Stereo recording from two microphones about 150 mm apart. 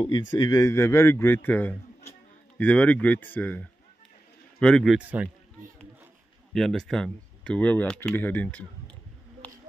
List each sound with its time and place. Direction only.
0.0 s a man's voice: 30° left (ahead or behind); by 4.9 s 5° left (ahead or behind)
4.9 s a man's voice: 10° right (ahead or behind)
6.5 s speech: centre (ahead or behind)
9.4 s a sound: 10° left (ahead or behind)